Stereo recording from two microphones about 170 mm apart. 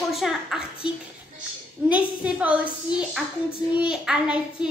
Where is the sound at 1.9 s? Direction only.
10° right (ahead or behind).